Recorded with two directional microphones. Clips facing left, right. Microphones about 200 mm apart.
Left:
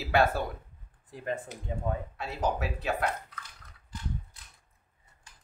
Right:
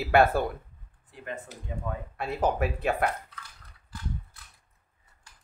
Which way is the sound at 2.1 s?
55° right (ahead or behind).